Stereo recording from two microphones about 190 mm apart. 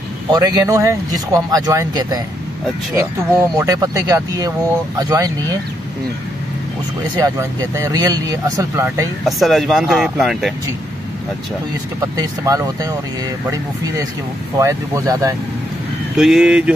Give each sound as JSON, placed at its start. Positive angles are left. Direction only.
{"t": 0.3, "sound": "speech", "side_deg": -20}
{"t": 3.5, "sound": "speech", "side_deg": -20}
{"t": 7.2, "sound": "speech", "side_deg": -15}
{"t": 9.2, "sound": "speech", "side_deg": 0}
{"t": 12.0, "sound": "speech", "side_deg": -20}
{"t": 14.6, "sound": "speech", "side_deg": -15}
{"t": 16.2, "sound": "speech", "side_deg": -5}